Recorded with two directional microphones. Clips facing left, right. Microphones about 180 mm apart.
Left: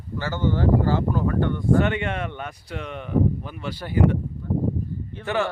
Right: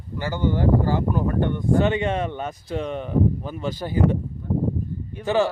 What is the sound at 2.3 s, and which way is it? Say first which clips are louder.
Speech: right 4 dB; 30° right (ahead or behind).